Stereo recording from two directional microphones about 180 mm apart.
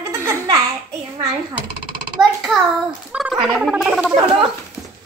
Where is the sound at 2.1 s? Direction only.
Centre (ahead or behind).